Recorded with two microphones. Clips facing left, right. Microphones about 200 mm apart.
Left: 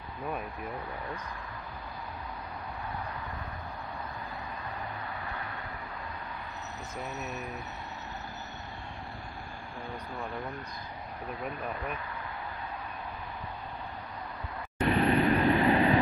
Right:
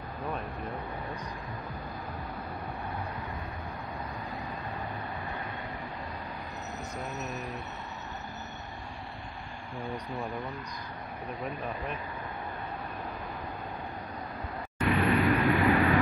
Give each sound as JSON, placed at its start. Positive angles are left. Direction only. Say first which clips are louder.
{"t": 7.0, "sound": "mantra", "louder": "left 1 dB", "side_deg": 0}
{"t": 9.8, "sound": "mantra", "louder": "right 3 dB", "side_deg": 0}
{"t": 14.9, "sound": "vehicle", "louder": "even", "side_deg": 30}